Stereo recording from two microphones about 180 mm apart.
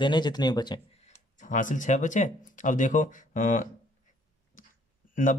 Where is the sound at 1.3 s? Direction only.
45° left (ahead or behind).